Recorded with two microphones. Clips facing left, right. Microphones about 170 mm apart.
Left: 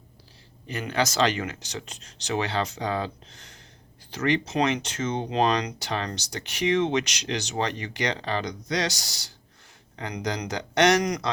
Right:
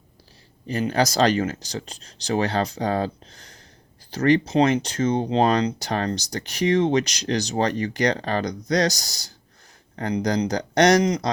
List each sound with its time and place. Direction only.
0.7 s speech: 35° right (ahead or behind)
5.6 s speech: 45° right (ahead or behind)